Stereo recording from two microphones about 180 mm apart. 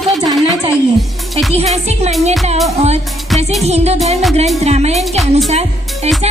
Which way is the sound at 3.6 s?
35° right (ahead or behind).